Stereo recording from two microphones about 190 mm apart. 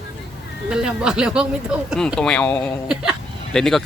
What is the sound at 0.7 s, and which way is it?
Speech, 5° right (ahead or behind).